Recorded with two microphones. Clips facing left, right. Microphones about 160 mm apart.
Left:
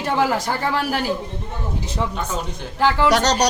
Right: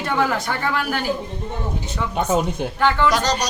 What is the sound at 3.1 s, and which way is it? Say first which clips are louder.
Speech: left 3 dB; 75° left (ahead or behind).